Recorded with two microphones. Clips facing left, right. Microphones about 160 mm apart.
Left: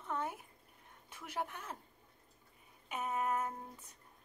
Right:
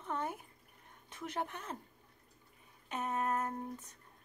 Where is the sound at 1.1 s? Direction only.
5° left (ahead or behind).